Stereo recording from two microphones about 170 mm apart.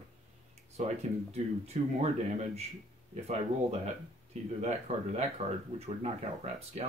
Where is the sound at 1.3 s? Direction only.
40° right (ahead or behind).